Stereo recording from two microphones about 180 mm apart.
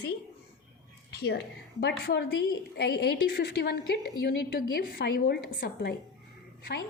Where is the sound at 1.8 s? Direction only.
70° left (ahead or behind).